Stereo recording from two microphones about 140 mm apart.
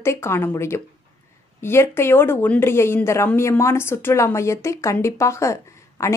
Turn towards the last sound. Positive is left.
turn(degrees=20)  # may be behind; listen again after turning